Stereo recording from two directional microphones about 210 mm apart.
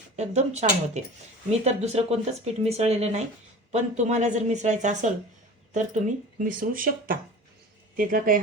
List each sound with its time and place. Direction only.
0.2 s speech: 30° right (ahead or behind)